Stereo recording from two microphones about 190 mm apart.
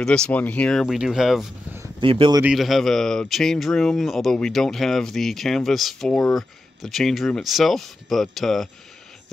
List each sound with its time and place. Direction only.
0.0 s speech: 5° left (ahead or behind)
2.0 s speech: 25° right (ahead or behind)
2.4 s speech: centre (ahead or behind)